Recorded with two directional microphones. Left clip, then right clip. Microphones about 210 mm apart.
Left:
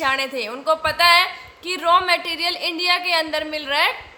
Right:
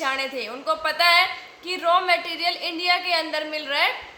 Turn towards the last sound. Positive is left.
turn(degrees=45)  # may be behind; listen again after turning